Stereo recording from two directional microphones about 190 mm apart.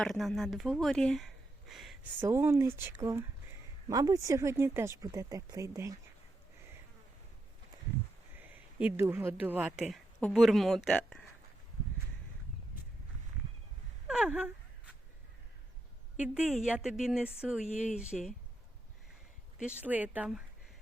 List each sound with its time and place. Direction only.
0.0 s speech: centre (ahead or behind)
1.7 s a sound: centre (ahead or behind)
2.2 s speech: 15° right (ahead or behind)
8.4 s speech: 10° right (ahead or behind)
14.1 s gasp: 5° right (ahead or behind)
16.1 s speech: 5° right (ahead or behind)
19.6 s speech: 10° right (ahead or behind)